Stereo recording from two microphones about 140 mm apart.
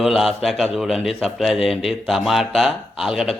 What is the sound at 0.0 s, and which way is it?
A man's voice, centre (ahead or behind).